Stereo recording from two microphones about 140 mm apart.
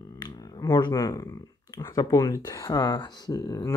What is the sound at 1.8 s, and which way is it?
Speech, 25° left (ahead or behind).